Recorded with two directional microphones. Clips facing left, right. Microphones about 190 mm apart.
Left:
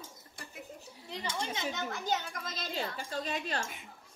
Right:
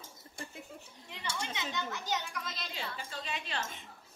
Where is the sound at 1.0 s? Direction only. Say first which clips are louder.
Left 3 dB; 35° left (ahead or behind).